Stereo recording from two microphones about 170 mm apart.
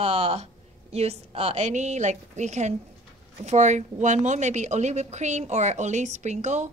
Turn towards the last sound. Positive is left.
turn(degrees=-40)  # may be behind; listen again after turning